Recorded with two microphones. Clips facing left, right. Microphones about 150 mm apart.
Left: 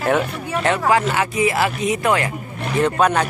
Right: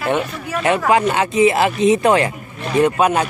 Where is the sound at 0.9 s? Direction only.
20° right (ahead or behind).